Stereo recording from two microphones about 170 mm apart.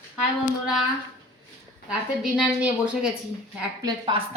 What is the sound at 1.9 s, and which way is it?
A woman's voice, 5° right (ahead or behind).